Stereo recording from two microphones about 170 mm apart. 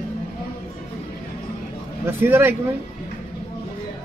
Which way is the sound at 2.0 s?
15° right (ahead or behind).